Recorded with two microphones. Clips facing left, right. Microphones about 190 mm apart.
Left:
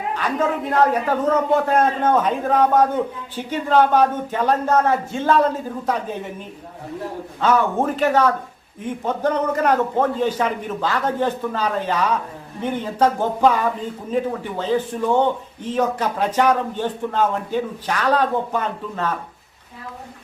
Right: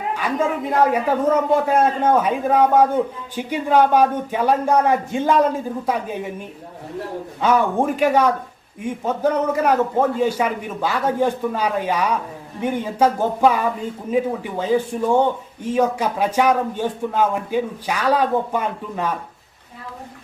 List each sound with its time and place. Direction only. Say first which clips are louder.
0.2 s speech: even; 10° right (ahead or behind)
7.4 s speech: right 1 dB; 10° right (ahead or behind)